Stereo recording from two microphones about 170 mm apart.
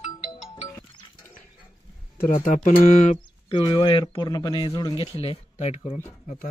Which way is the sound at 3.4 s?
30° left (ahead or behind).